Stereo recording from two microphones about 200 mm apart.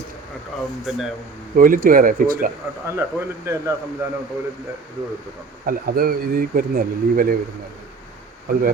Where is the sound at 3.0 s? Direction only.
15° right (ahead or behind).